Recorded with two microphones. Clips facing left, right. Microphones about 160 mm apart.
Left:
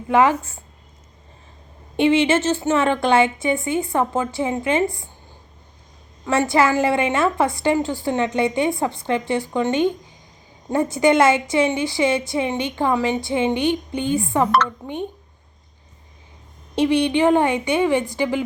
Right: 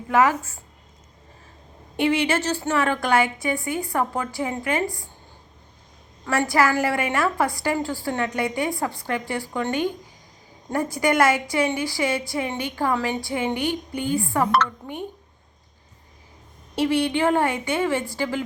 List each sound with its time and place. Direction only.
0.1 s a woman's voice: 25° left (ahead or behind)
2.0 s a woman's voice: 25° left (ahead or behind)
6.2 s a woman's voice: 25° left (ahead or behind)
16.7 s a woman's voice: 20° left (ahead or behind)